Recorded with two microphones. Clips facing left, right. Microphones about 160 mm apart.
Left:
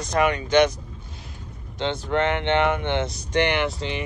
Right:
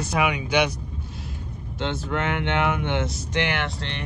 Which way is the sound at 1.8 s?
5° right (ahead or behind).